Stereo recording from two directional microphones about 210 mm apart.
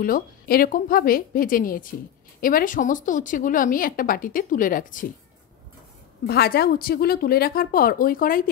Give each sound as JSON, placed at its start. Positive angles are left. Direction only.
{"t": 0.0, "sound": "a woman's voice", "side_deg": 45}
{"t": 6.2, "sound": "speech", "side_deg": 50}